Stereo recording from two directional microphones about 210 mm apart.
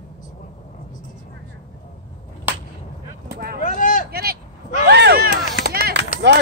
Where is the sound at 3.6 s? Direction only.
40° left (ahead or behind).